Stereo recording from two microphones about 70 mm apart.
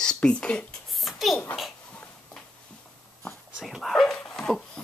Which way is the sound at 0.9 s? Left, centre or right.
Centre.